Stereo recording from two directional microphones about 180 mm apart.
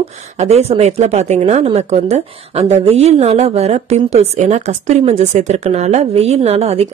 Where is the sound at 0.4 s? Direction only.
35° right (ahead or behind).